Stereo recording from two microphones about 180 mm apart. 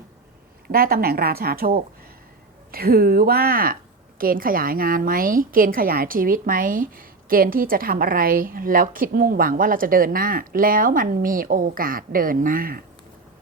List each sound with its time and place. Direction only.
0.7 s a woman's voice: 55° right (ahead or behind)